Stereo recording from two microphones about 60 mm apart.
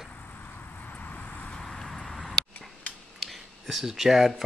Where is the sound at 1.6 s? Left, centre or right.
Centre.